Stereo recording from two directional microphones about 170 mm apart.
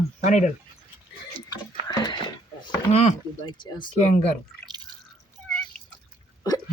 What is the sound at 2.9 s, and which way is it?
Speech, 40° left (ahead or behind).